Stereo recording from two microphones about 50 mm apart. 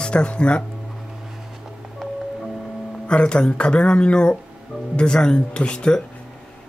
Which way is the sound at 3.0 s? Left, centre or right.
Centre.